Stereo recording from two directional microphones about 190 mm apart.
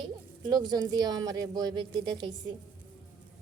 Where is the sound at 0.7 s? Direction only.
20° right (ahead or behind).